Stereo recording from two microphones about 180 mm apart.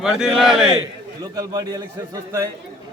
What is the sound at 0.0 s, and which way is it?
Speech, 5° right (ahead or behind).